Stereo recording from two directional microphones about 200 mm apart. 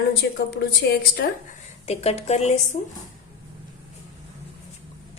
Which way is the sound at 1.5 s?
30° left (ahead or behind).